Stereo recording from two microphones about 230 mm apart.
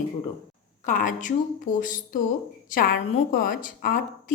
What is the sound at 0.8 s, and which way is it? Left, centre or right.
Speech, left.